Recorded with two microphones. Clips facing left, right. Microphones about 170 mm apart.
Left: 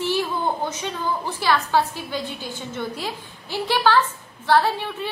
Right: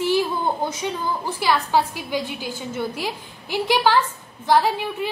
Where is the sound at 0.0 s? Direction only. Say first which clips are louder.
Right 3 dB; 10° right (ahead or behind).